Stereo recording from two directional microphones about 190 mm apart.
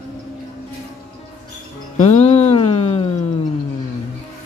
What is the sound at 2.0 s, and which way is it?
Music, 35° left (ahead or behind).